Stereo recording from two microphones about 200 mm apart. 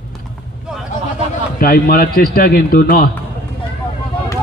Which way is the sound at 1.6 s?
45° left (ahead or behind).